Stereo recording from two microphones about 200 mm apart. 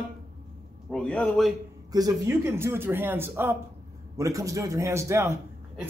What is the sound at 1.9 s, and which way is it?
Speech, 20° right (ahead or behind).